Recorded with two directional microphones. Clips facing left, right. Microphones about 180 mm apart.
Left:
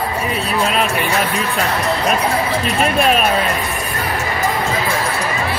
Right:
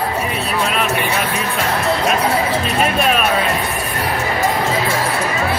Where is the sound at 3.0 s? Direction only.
45° left (ahead or behind).